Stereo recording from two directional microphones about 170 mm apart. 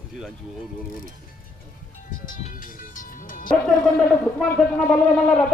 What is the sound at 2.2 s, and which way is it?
Speech, 50° left (ahead or behind).